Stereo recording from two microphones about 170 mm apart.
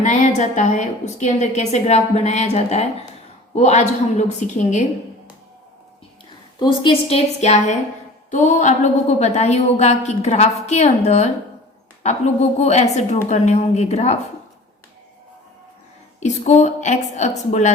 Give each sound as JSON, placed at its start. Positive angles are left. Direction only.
{"t": 0.0, "sound": "a woman's voice", "side_deg": 45}
{"t": 6.6, "sound": "a woman's voice", "side_deg": 30}
{"t": 16.2, "sound": "a woman's voice", "side_deg": 45}